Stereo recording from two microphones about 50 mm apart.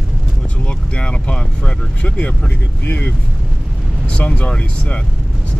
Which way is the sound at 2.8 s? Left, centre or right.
Left.